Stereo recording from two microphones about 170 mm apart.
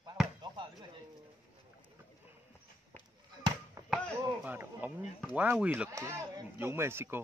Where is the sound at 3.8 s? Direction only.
20° right (ahead or behind).